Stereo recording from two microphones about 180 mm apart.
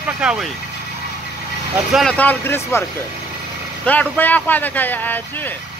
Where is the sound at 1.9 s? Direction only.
5° left (ahead or behind).